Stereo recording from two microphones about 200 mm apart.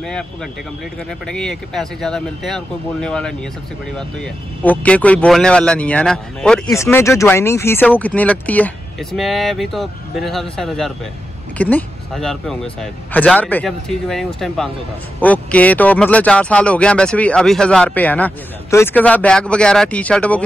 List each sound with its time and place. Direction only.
0.0 s speech: centre (ahead or behind)
6.7 s speech: 15° left (ahead or behind)